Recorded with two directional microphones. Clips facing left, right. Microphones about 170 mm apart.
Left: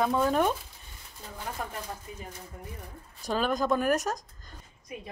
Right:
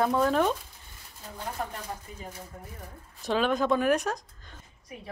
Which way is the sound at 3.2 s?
Centre (ahead or behind).